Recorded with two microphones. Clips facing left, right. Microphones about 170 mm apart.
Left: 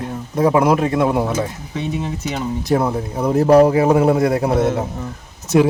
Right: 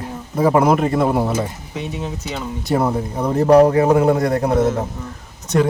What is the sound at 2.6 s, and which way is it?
Speech, centre (ahead or behind).